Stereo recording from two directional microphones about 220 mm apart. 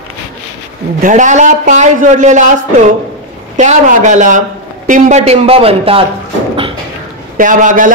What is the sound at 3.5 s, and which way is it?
A man's voice, 35° right (ahead or behind).